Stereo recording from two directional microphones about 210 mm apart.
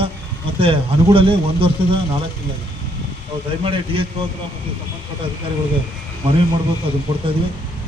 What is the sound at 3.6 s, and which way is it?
Speech, 25° right (ahead or behind).